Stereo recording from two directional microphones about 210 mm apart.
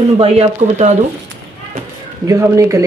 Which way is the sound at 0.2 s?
30° right (ahead or behind).